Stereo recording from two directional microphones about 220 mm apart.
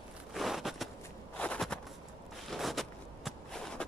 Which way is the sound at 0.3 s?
Centre (ahead or behind).